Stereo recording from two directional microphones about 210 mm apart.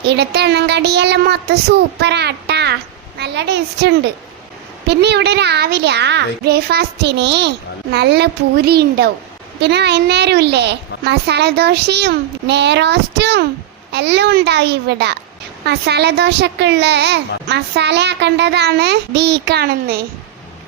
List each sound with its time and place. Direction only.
0.0 s a child's voice: 55° right (ahead or behind)